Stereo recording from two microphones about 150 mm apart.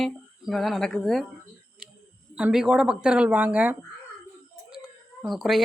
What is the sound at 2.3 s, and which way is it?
Speech, 5° right (ahead or behind).